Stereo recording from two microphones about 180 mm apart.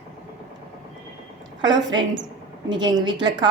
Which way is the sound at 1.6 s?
25° right (ahead or behind).